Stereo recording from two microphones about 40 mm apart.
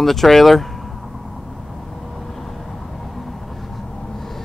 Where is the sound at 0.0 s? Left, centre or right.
Centre.